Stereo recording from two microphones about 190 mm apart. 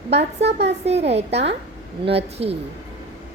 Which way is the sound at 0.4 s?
60° right (ahead or behind).